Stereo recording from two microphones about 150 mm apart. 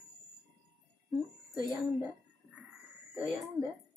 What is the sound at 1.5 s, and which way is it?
Speech, centre (ahead or behind).